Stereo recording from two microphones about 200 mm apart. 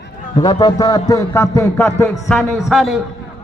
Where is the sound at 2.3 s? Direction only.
Centre (ahead or behind).